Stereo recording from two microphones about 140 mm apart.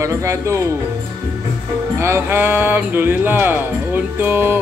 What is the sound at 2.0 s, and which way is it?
Speech, 15° right (ahead or behind).